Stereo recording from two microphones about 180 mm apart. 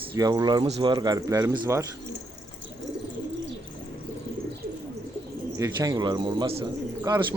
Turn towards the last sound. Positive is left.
turn(degrees=-20)  # may be behind; listen again after turning